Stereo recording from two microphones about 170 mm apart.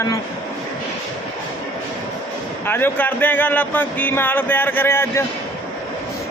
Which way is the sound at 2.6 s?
10° left (ahead or behind).